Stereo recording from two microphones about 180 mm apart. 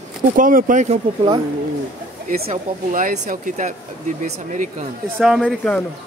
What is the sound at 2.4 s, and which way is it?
Speech, 40° right (ahead or behind).